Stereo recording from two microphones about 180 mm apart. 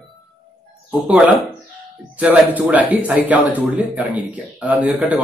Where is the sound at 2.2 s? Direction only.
10° right (ahead or behind).